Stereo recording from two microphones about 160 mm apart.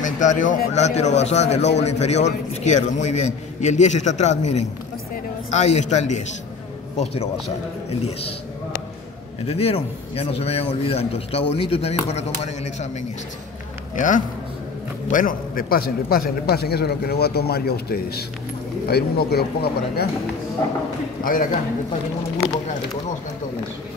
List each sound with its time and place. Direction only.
0.0 s a man's voice: 50° left (ahead or behind)
9.5 s a man's voice: 40° left (ahead or behind)
13.9 s a man's voice: 55° left (ahead or behind); by 20.1 s 80° left
21.2 s a man's voice: 60° left (ahead or behind)